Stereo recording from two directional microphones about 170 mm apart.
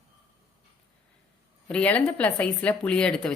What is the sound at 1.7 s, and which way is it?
A woman's voice, 5° left (ahead or behind).